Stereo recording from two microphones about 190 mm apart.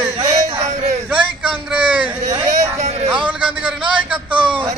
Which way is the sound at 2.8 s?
35° right (ahead or behind).